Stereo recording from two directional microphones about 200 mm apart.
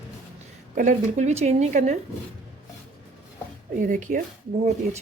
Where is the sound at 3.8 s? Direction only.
40° right (ahead or behind).